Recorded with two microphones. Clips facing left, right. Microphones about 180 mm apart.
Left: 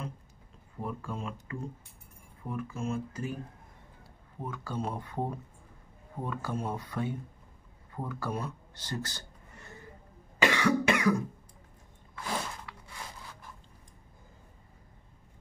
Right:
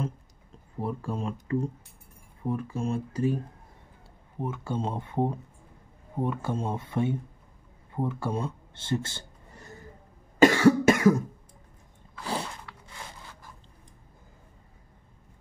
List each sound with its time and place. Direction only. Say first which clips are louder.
0.7 s speech: right 5 dB; 35° right (ahead or behind)
4.4 s speech: right 5 dB; 25° right (ahead or behind)
10.4 s cough: right 8 dB; 45° right (ahead or behind)
12.2 s sneeze: right 3 dB; 35° right (ahead or behind)